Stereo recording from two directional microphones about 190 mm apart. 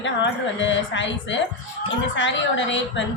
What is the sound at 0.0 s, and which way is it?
A woman's voice, 75° left (ahead or behind).